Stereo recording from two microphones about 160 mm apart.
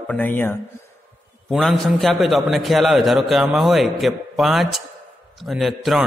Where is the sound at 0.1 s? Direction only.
10° left (ahead or behind).